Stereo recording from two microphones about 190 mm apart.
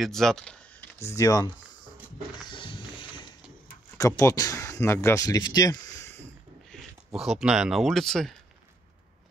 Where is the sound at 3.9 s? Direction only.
15° left (ahead or behind).